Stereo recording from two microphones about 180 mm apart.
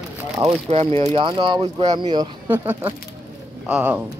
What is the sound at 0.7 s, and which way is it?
Speech, 35° right (ahead or behind).